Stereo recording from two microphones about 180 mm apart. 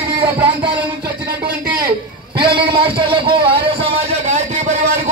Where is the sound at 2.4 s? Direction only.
60° right (ahead or behind).